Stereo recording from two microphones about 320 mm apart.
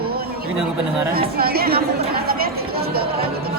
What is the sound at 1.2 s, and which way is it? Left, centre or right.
Speech, right.